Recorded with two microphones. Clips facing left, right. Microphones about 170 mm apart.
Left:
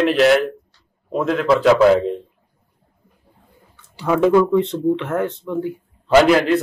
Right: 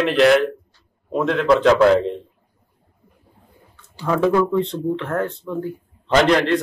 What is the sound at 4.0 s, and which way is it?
Speech, 15° left (ahead or behind).